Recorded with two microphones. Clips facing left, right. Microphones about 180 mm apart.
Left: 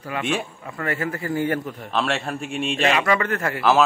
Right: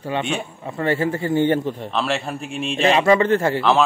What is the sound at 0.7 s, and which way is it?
A man's voice, 30° right (ahead or behind).